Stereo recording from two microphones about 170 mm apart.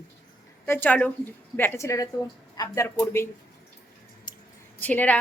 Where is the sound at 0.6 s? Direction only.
10° left (ahead or behind).